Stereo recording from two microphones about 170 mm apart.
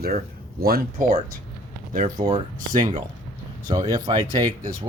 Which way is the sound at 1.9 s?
50° right (ahead or behind).